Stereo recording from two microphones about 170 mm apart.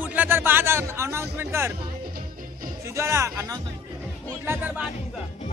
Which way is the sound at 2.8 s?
15° right (ahead or behind).